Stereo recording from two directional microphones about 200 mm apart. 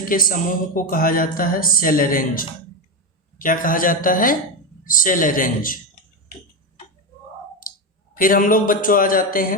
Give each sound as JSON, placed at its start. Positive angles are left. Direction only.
{"t": 0.1, "sound": "speech", "side_deg": 45}
{"t": 8.1, "sound": "speech", "side_deg": 45}